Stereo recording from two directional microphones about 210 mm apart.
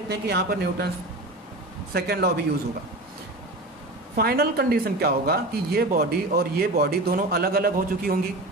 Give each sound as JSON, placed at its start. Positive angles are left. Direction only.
{"t": 0.1, "sound": "speech", "side_deg": -50}
{"t": 2.0, "sound": "speech", "side_deg": -50}
{"t": 4.2, "sound": "speech", "side_deg": -45}